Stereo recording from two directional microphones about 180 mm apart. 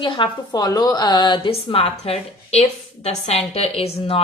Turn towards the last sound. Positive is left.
turn(degrees=35)  # may be behind; listen again after turning